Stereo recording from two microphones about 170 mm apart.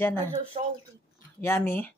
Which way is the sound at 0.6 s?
30° right (ahead or behind).